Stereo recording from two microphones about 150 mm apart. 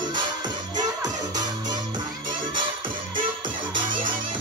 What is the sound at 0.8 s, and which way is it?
Music, 25° right (ahead or behind).